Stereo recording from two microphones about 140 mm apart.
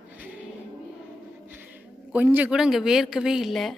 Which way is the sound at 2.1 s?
10° right (ahead or behind).